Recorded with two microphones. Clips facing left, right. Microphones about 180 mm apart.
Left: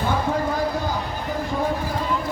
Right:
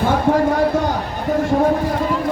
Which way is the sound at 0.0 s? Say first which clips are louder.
Right 7 dB; 70° right (ahead or behind).